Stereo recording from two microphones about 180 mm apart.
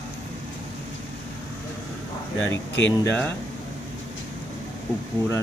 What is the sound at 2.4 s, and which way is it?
Speech, 90° left.